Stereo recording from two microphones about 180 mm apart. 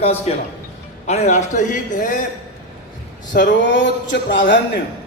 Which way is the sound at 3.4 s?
80° left.